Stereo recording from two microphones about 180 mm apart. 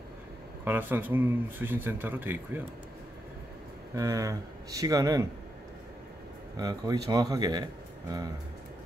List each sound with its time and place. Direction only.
0.7 s speech: 10° right (ahead or behind)
3.9 s speech: 20° right (ahead or behind)
6.5 s speech: 20° right (ahead or behind)